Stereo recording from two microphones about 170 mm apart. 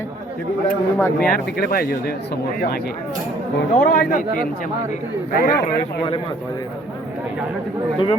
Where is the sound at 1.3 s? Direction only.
60° left (ahead or behind).